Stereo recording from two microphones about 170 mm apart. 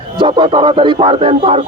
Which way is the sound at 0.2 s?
30° right (ahead or behind).